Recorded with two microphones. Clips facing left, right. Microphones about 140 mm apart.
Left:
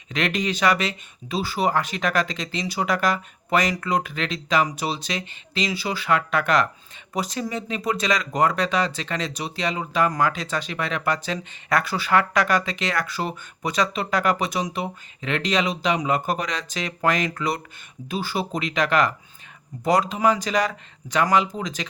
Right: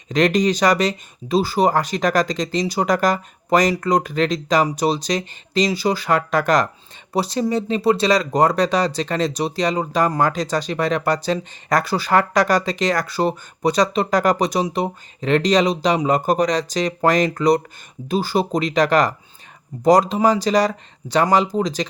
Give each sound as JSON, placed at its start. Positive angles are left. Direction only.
{"t": 0.1, "sound": "speech", "side_deg": -35}